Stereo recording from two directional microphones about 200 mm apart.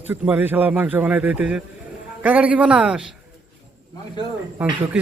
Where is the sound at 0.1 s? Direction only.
10° right (ahead or behind).